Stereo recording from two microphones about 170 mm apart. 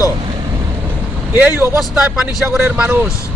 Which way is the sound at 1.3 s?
10° right (ahead or behind).